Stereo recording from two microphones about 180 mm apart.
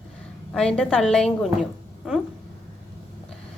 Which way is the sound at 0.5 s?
5° left (ahead or behind).